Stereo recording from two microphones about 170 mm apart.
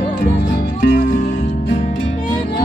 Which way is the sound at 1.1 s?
50° left (ahead or behind).